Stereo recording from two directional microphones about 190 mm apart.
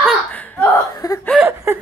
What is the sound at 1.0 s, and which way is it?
Speech, 20° left (ahead or behind).